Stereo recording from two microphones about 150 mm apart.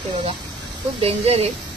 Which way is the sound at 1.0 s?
40° right (ahead or behind).